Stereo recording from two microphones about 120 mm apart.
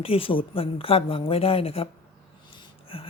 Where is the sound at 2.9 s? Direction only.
50° left (ahead or behind).